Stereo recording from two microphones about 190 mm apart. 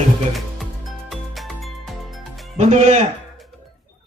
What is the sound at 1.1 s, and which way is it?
Music, centre (ahead or behind).